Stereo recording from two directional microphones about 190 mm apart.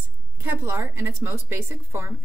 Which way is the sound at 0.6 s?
15° right (ahead or behind).